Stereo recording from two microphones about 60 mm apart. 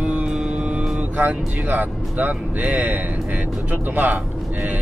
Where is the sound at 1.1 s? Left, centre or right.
Right.